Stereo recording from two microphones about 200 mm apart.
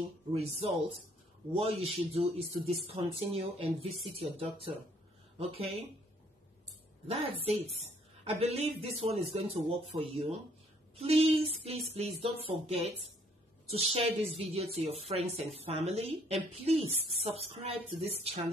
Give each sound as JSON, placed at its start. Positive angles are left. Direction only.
{"t": 0.3, "sound": "a woman's voice", "side_deg": -30}
{"t": 7.1, "sound": "a woman's voice", "side_deg": -30}
{"t": 13.9, "sound": "a woman's voice", "side_deg": -30}